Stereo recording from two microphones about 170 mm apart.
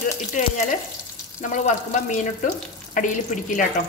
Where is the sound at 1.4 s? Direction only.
45° left (ahead or behind).